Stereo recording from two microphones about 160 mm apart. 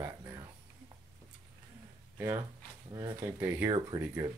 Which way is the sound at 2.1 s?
15° right (ahead or behind).